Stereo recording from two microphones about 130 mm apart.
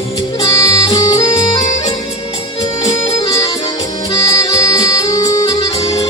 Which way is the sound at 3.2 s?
25° left (ahead or behind).